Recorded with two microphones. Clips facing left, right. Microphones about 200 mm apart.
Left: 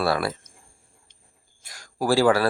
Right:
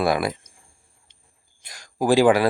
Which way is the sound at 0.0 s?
15° right (ahead or behind).